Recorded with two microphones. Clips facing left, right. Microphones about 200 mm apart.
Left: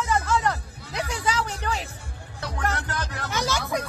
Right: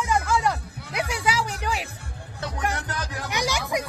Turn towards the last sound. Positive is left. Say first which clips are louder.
# even
turn(degrees=-15)  # may be behind; listen again after turning